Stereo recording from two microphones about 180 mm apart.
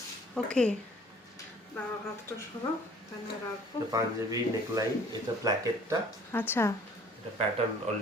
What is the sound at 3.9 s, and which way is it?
Speech, 20° right (ahead or behind).